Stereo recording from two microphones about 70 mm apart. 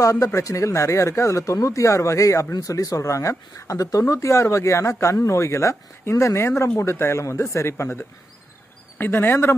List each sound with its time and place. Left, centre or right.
0.0 s speech: left